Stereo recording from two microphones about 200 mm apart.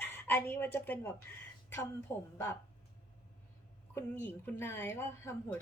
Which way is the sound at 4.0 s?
10° left (ahead or behind).